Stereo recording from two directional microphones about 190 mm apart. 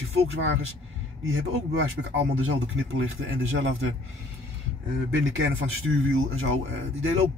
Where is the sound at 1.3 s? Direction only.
85° right.